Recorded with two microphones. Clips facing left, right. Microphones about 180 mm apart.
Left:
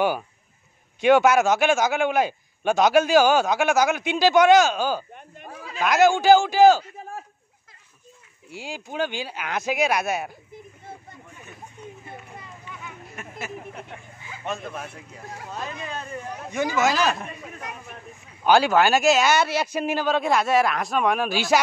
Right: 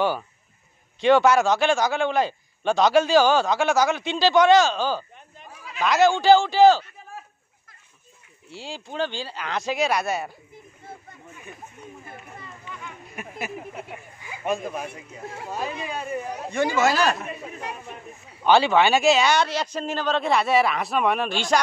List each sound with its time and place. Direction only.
1.0 s a man's voice: 5° left (ahead or behind)
5.1 s goat: 55° left (ahead or behind)
6.0 s speech: 10° left (ahead or behind)
8.5 s speech: 10° left (ahead or behind)
13.1 s speech: 15° right (ahead or behind)
16.5 s a man's voice: centre (ahead or behind)
18.4 s a man's voice: 5° left (ahead or behind)